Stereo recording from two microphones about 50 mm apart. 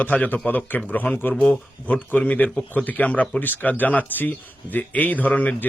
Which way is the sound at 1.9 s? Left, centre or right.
Left.